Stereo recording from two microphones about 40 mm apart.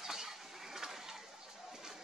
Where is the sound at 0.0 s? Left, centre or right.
Centre.